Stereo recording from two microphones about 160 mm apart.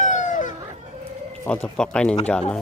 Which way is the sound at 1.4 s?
5° left (ahead or behind).